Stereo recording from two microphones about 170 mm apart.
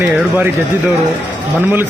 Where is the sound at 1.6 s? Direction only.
10° right (ahead or behind).